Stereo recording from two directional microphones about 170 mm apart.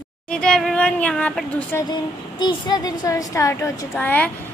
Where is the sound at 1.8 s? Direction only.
25° left (ahead or behind).